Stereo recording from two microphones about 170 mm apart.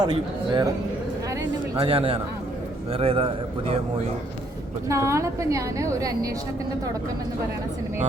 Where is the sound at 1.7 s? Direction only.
35° right (ahead or behind).